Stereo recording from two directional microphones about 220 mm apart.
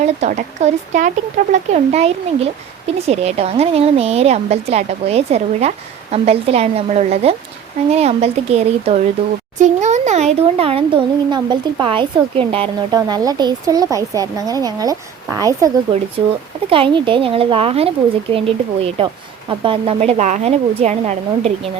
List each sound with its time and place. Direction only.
0.0 s speech: 30° right (ahead or behind)